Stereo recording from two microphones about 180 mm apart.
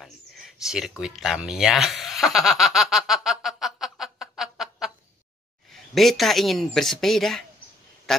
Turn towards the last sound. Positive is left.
turn(degrees=0)  # may be behind; listen again after turning